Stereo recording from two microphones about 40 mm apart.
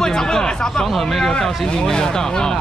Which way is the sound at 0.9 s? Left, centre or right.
Centre.